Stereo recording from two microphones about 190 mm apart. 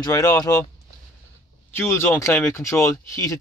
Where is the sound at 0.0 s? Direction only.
20° left (ahead or behind).